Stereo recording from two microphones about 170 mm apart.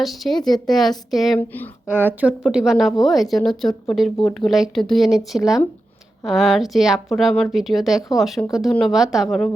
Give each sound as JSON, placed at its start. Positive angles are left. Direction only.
{"t": 0.0, "sound": "speech", "side_deg": 0}
{"t": 1.4, "sound": "speech", "side_deg": 10}
{"t": 1.9, "sound": "speech", "side_deg": -10}